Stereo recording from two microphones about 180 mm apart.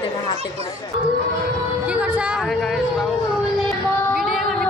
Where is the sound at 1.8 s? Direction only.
5° right (ahead or behind).